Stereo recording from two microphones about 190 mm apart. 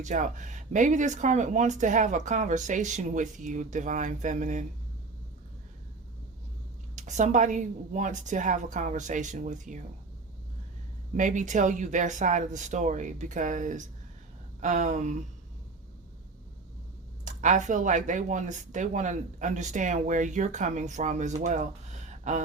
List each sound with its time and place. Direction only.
0.0 s speech: 40° right (ahead or behind)
6.9 s speech: 40° right (ahead or behind)
11.2 s speech: 40° right (ahead or behind)
17.2 s speech: 40° right (ahead or behind)
21.4 s a sound: 40° right (ahead or behind)